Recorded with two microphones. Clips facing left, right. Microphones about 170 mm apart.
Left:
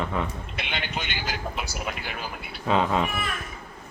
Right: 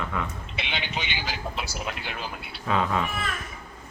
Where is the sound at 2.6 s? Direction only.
25° left (ahead or behind).